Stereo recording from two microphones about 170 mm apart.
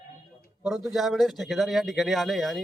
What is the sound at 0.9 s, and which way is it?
A man's voice, centre (ahead or behind).